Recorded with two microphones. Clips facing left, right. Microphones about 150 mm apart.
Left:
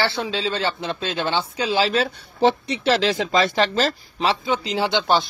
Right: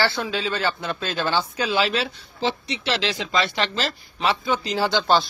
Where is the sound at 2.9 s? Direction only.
40° left (ahead or behind).